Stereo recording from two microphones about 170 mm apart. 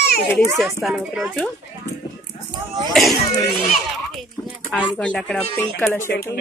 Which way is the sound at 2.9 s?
Centre (ahead or behind).